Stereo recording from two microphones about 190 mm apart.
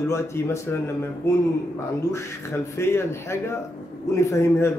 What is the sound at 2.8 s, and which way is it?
Speech, 15° left (ahead or behind).